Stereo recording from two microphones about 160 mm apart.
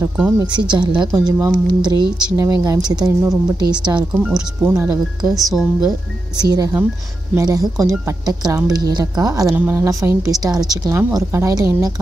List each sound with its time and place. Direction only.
0.4 s a woman's voice: 30° right (ahead or behind)
5.3 s speech: centre (ahead or behind)
6.4 s a woman's voice: 25° right (ahead or behind)